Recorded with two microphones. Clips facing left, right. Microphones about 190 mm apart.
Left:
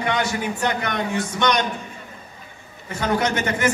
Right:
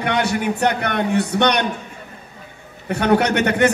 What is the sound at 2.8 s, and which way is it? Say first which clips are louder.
Speech: right 5 dB; 65° right (ahead or behind).